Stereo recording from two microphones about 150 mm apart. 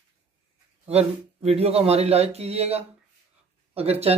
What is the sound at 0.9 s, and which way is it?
Speech, 45° right (ahead or behind).